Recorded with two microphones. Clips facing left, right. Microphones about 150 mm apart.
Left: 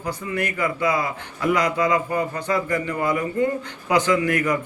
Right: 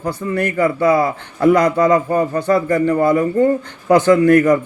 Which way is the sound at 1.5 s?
50° right (ahead or behind).